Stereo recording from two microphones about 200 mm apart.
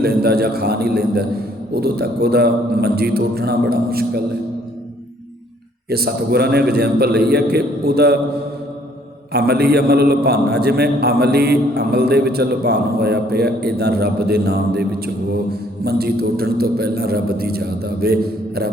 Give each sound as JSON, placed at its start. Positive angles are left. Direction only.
{"t": 0.0, "sound": "a man's voice", "side_deg": -50}
{"t": 5.9, "sound": "a man's voice", "side_deg": -50}
{"t": 9.3, "sound": "a man's voice", "side_deg": -50}